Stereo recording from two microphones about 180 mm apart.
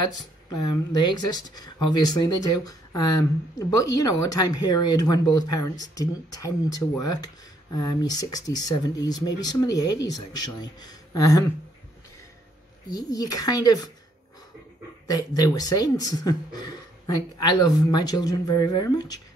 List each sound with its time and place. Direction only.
0.0 s speech: 20° left (ahead or behind)
12.9 s speech: 20° left (ahead or behind)
15.0 s speech: 20° left (ahead or behind)